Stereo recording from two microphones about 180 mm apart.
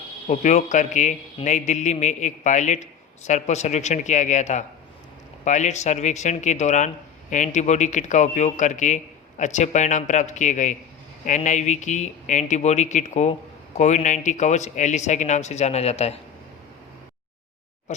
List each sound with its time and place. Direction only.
0.3 s a man's voice: 40° left (ahead or behind)